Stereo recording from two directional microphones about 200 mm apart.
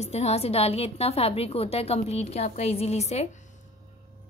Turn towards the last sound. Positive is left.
turn(degrees=30)  # may be behind; listen again after turning